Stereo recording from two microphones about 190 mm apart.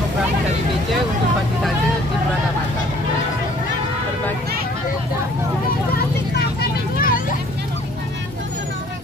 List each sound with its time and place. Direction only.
7.0 s vehicle: 50° left (ahead or behind)